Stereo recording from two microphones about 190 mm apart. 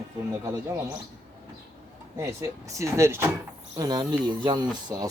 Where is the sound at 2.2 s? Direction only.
15° right (ahead or behind).